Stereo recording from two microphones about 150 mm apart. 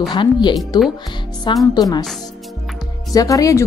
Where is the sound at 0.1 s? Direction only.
30° left (ahead or behind).